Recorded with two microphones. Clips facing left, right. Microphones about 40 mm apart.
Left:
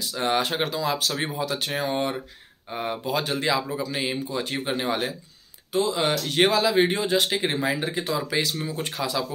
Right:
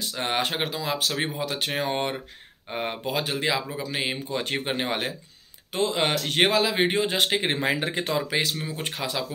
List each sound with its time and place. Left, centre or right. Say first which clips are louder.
0.0 s speech: left 2 dB; right
3.1 s speech: left 2 dB; centre
4.3 s speech: even; right
5.7 s speech: left 1 dB; right
6.3 s speech: left 3 dB; right
8.3 s speech: left 1 dB; right